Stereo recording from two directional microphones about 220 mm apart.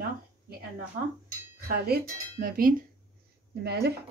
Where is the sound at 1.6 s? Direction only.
45° right (ahead or behind).